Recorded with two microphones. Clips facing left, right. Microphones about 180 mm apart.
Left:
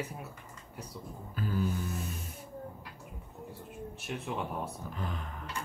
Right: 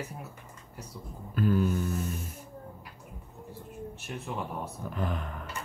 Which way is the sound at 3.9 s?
Centre (ahead or behind).